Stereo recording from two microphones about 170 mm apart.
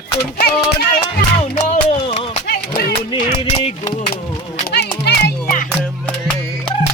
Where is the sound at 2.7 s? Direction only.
60° left (ahead or behind).